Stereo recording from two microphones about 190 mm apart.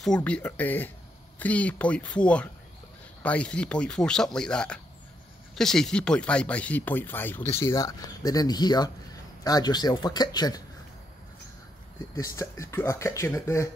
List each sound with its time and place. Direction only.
0.0 s speech: 5° left (ahead or behind); by 10.6 s 20° left (ahead or behind)
12.2 s speech: 15° left (ahead or behind)